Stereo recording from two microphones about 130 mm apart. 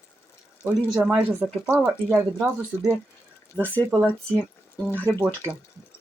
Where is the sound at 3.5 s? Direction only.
15° left (ahead or behind).